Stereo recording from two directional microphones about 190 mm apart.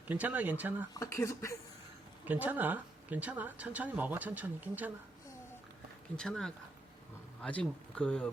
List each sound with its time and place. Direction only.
0.1 s speech: 10° right (ahead or behind)
0.9 s speech: 15° left (ahead or behind)
2.2 s speech: 10° right (ahead or behind)
6.1 s speech: 5° left (ahead or behind)